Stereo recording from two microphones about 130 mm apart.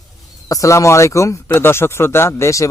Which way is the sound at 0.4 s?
25° left (ahead or behind).